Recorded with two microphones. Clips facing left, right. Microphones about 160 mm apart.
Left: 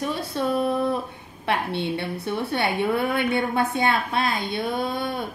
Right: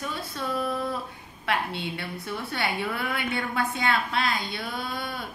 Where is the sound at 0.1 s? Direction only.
25° left (ahead or behind).